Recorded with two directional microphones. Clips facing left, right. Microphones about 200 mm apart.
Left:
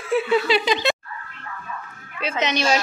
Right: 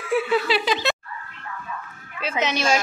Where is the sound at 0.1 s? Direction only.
5° right (ahead or behind).